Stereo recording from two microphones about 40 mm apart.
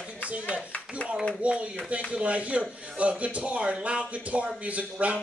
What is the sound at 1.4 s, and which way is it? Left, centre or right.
A man's voice, right.